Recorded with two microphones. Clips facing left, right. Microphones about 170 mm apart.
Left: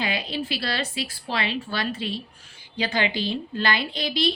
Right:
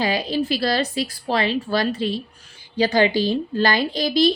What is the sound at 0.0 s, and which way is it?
A woman's voice, 40° right (ahead or behind).